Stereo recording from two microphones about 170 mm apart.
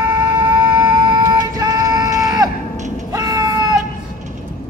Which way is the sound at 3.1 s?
20° right (ahead or behind).